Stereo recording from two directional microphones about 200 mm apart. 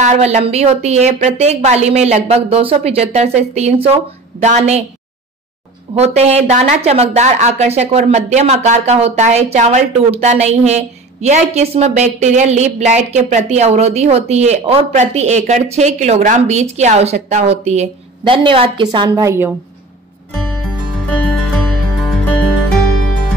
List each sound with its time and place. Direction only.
0.0 s speech: 35° right (ahead or behind)
5.9 s a woman's voice: 30° right (ahead or behind); by 19.5 s 15° right (ahead or behind)
21.1 s music: 5° left (ahead or behind)